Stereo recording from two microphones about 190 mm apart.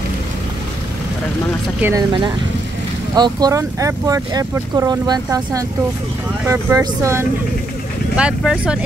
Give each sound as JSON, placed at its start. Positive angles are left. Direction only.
{"t": 1.8, "sound": "speech", "side_deg": -10}
{"t": 3.2, "sound": "speech", "side_deg": -20}